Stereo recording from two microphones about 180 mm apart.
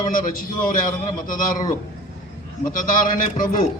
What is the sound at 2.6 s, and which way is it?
A man's voice, 50° left (ahead or behind).